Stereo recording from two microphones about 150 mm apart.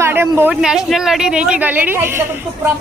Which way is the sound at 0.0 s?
15° right (ahead or behind).